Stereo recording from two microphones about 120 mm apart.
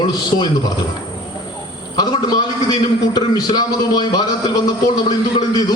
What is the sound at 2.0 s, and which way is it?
A man's voice, 35° left (ahead or behind).